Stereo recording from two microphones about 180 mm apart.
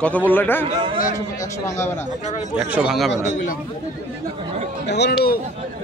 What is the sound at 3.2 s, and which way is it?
Speech, 45° left (ahead or behind).